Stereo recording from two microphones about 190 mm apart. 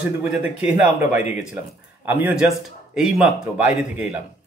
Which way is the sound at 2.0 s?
10° right (ahead or behind).